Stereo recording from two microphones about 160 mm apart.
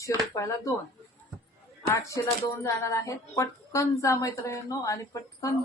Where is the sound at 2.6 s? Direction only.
20° left (ahead or behind).